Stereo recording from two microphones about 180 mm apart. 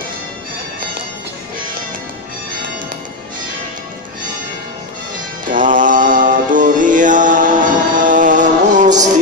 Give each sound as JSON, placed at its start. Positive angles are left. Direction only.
{"t": 5.4, "sound": "music", "side_deg": -50}